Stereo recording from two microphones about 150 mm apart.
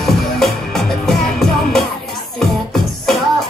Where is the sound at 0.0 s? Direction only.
Centre (ahead or behind).